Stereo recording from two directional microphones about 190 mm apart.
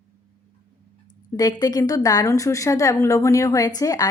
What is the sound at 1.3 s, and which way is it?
A woman's voice, 20° left (ahead or behind).